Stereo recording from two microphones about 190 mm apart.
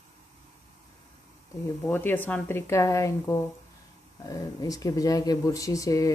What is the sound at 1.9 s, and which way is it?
Speech, 10° left (ahead or behind).